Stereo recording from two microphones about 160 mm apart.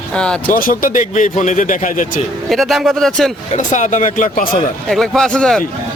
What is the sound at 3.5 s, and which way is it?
Speech, 50° left (ahead or behind).